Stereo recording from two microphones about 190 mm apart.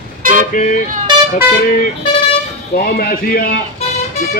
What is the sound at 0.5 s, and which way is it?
Speech, 45° left (ahead or behind).